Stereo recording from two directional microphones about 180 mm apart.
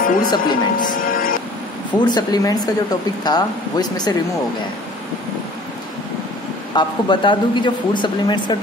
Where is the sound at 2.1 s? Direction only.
20° left (ahead or behind).